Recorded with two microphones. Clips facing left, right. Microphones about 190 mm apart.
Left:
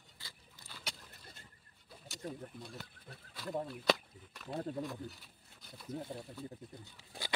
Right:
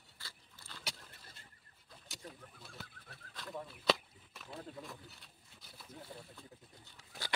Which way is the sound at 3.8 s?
Centre (ahead or behind).